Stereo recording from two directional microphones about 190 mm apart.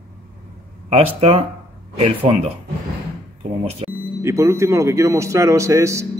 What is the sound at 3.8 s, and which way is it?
Speech, 30° right (ahead or behind).